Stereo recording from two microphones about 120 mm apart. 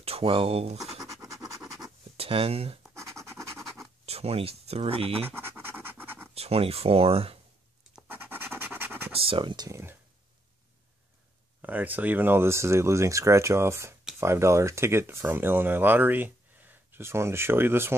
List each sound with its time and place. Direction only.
0.0 s speech: 55° right (ahead or behind)
0.7 s speech: centre (ahead or behind)
1.0 s scratch: 25° right (ahead or behind)
2.1 s speech: 50° right (ahead or behind)
2.9 s scratch: 25° right (ahead or behind)
4.0 s speech: 60° right (ahead or behind)
5.2 s scratch: 20° right (ahead or behind)
6.3 s speech: 55° right (ahead or behind)
8.1 s scratch: 15° right (ahead or behind)
9.2 s speech: 45° right (ahead or behind)
9.7 s speech: 25° right (ahead or behind)
11.6 s speech: 15° right (ahead or behind)